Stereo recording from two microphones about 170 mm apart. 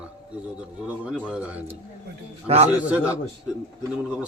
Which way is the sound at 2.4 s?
35° right (ahead or behind).